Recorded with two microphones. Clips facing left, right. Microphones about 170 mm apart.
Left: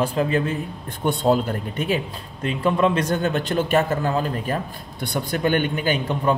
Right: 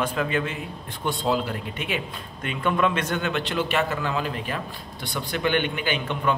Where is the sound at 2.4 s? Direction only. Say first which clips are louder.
Left 4 dB; 30° left (ahead or behind).